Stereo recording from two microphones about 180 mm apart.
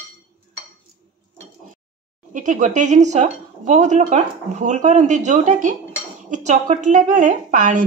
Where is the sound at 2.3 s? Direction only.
45° right (ahead or behind).